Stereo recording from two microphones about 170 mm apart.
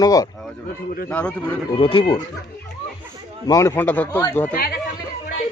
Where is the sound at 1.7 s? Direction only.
30° left (ahead or behind).